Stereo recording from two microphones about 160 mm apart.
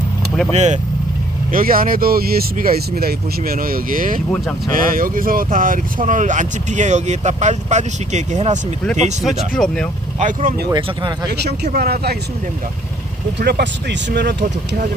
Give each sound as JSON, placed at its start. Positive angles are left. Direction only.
{"t": 0.5, "sound": "speech", "side_deg": -45}
{"t": 1.5, "sound": "speech", "side_deg": -65}
{"t": 9.6, "sound": "speech", "side_deg": 5}
{"t": 10.2, "sound": "speech", "side_deg": -55}
{"t": 10.8, "sound": "speech", "side_deg": -30}
{"t": 11.3, "sound": "speech", "side_deg": -90}
{"t": 13.4, "sound": "speech", "side_deg": -85}